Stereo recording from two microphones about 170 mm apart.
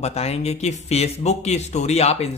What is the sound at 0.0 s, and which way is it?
Speech, 40° left (ahead or behind).